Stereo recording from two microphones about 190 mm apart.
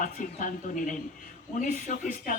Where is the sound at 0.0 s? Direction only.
45° left (ahead or behind).